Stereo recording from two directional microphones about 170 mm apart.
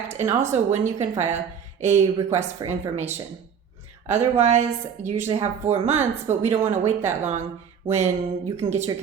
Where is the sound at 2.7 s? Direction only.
40° right (ahead or behind).